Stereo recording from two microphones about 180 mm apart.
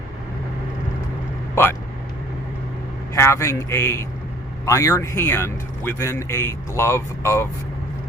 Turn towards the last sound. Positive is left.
turn(degrees=15)  # may be behind; listen again after turning